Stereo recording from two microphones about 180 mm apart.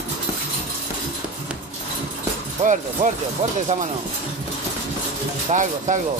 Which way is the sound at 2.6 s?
40° right (ahead or behind).